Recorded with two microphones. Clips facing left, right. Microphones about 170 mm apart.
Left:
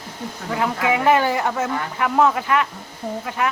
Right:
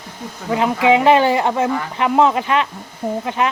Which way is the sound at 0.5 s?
20° right (ahead or behind).